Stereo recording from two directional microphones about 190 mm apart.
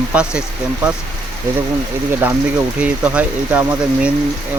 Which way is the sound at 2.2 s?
10° right (ahead or behind).